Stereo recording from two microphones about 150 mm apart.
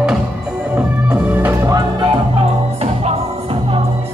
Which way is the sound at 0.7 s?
10° right (ahead or behind).